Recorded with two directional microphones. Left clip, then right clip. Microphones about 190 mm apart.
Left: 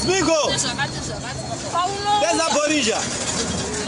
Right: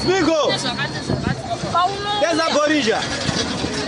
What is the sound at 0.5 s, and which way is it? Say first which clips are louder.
Speech: right 1 dB; 5° right (ahead or behind).